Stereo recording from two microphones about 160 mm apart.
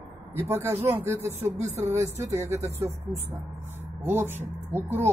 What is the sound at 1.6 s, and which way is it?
Speech, 45° right (ahead or behind).